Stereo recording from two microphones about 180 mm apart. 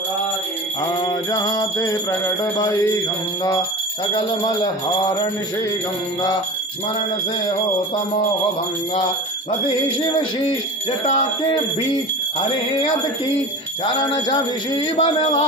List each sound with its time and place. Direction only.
1.0 s jingle bell: 20° left (ahead or behind)
4.1 s jingle bell: 30° left (ahead or behind)
13.8 s jingle bell: 25° left (ahead or behind)